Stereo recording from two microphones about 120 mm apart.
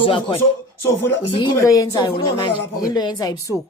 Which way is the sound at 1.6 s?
25° left (ahead or behind).